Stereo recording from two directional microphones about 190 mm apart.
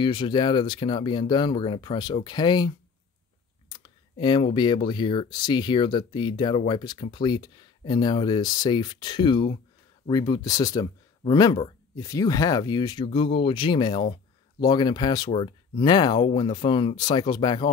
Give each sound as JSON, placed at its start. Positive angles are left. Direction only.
{"t": 0.0, "sound": "speech", "side_deg": 25}
{"t": 3.6, "sound": "clicking", "side_deg": 25}
{"t": 4.5, "sound": "speech", "side_deg": 25}